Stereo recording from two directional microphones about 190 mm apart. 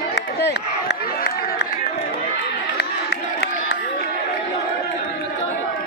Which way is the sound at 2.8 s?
60° left (ahead or behind).